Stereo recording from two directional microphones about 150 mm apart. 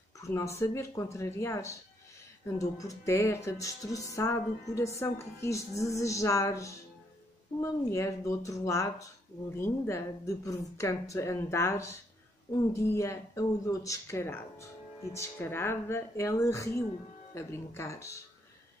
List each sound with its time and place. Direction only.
0.2 s speech: 20° left (ahead or behind)